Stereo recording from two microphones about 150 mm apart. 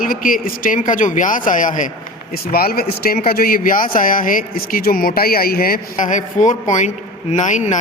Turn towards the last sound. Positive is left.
turn(degrees=55)  # may be behind; listen again after turning